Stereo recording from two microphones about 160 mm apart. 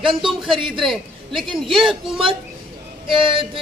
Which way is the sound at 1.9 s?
35° right (ahead or behind).